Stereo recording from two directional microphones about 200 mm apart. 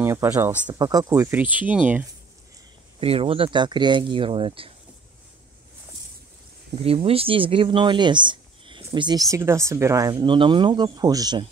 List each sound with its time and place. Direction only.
0.0 s speech: 10° right (ahead or behind)
3.0 s speech: 30° right (ahead or behind)
6.7 s speech: 30° right (ahead or behind)